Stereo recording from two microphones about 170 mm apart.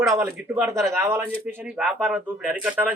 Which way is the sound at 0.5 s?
10° right (ahead or behind).